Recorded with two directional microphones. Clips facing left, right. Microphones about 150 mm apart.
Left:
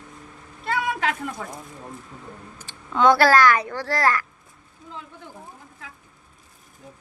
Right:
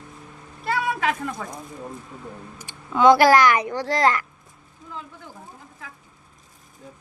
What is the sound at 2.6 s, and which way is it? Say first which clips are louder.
A child's voice: right 1 dB; 10° right (ahead or behind).